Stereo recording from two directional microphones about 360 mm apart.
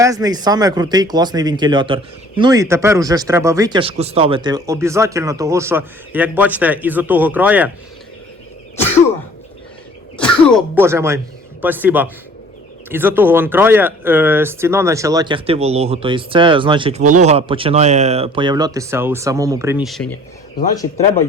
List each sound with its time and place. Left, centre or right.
0.0 s speech: centre
10.2 s speech: centre